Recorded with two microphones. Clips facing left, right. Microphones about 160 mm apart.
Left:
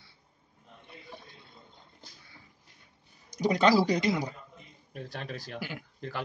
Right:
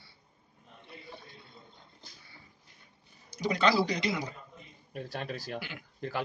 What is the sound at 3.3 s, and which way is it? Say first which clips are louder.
Speech: left 3 dB; 45° left (ahead or behind).